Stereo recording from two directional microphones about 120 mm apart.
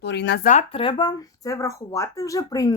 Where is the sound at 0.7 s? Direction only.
45° left (ahead or behind).